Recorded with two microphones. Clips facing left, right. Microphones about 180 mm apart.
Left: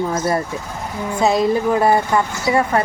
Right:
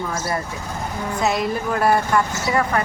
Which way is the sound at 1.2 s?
25° left (ahead or behind).